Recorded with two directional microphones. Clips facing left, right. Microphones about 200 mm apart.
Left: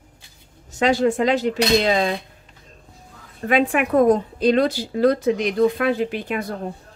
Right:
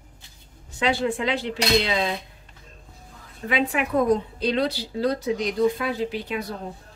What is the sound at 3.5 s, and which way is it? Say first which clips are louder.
A woman's voice: left 5 dB; 50° left (ahead or behind).